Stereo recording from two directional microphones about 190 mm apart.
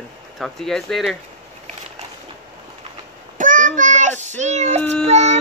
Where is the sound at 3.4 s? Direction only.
45° right (ahead or behind).